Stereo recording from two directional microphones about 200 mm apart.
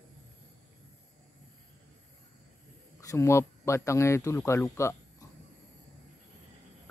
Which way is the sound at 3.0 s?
15° left (ahead or behind).